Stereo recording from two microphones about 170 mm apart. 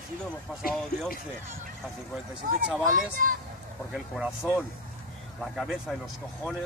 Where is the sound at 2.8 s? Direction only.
55° right (ahead or behind).